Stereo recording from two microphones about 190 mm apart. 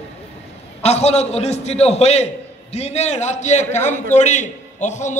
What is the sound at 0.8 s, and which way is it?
A man's voice, 35° left (ahead or behind).